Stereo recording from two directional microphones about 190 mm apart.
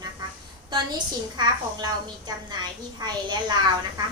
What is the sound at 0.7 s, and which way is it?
A woman's voice, 20° right (ahead or behind).